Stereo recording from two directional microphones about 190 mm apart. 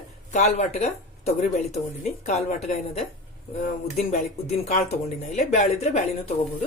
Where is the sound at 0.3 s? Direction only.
35° left (ahead or behind).